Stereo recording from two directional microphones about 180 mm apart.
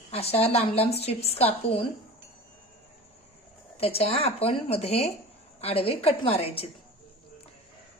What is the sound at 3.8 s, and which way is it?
A woman's voice, 35° left (ahead or behind).